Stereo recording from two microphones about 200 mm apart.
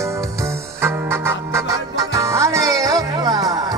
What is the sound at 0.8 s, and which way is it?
Music, 15° right (ahead or behind).